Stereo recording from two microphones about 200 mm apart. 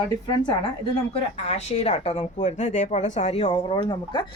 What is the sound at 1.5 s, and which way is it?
A woman's voice, 30° left (ahead or behind).